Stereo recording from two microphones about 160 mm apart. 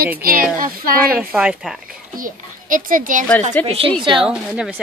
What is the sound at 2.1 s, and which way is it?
A child's voice, 60° right (ahead or behind).